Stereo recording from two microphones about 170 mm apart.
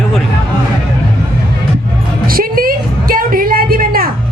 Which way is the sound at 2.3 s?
60° right (ahead or behind).